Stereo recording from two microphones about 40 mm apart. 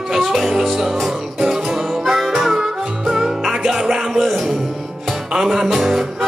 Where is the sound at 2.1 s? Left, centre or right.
Centre.